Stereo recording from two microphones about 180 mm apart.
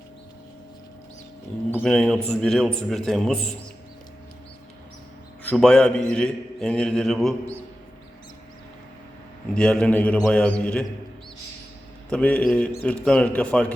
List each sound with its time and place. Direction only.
1.7 s a man's voice: 5° left (ahead or behind)
5.4 s a man's voice: 5° left (ahead or behind)
9.6 s a man's voice: 5° left (ahead or behind)
12.1 s a man's voice: 5° left (ahead or behind)